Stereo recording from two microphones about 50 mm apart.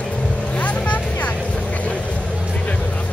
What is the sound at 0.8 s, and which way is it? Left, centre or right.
Music, left.